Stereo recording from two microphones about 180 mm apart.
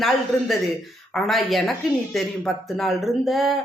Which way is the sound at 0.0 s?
Centre (ahead or behind).